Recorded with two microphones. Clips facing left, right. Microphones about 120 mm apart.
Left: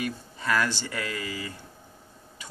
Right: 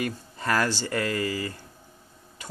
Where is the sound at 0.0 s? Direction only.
45° right (ahead or behind).